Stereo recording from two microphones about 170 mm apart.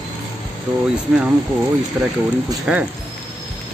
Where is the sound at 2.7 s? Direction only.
5° right (ahead or behind).